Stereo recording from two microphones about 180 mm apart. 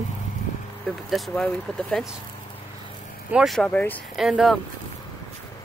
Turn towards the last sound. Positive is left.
turn(degrees=0)  # may be behind; listen again after turning